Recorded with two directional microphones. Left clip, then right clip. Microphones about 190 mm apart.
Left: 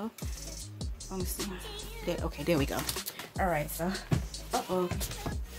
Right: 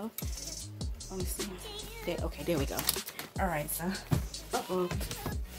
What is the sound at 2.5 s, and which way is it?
Speech, 35° left (ahead or behind).